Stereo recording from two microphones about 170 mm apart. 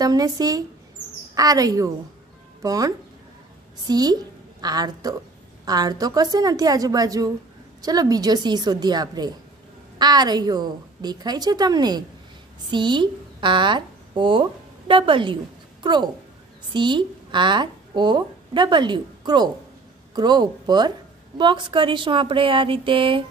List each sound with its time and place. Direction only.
0.0 s a woman's voice: 20° right (ahead or behind)